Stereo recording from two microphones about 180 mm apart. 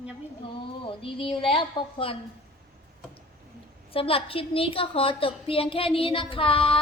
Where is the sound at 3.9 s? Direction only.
30° left (ahead or behind).